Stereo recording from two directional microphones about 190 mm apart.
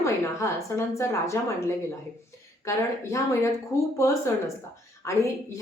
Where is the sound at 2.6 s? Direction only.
15° left (ahead or behind).